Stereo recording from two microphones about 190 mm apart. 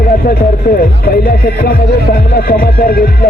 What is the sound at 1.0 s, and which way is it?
Speech, 50° left (ahead or behind).